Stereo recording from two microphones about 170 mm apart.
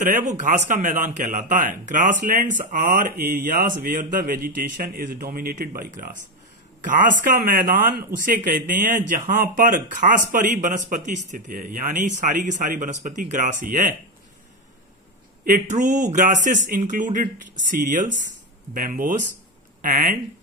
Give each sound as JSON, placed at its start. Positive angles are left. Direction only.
{"t": 0.0, "sound": "a man's voice", "side_deg": -50}
{"t": 15.4, "sound": "a man's voice", "side_deg": -50}